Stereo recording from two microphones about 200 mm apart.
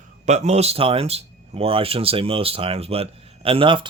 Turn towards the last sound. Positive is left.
turn(degrees=-25)  # may be behind; listen again after turning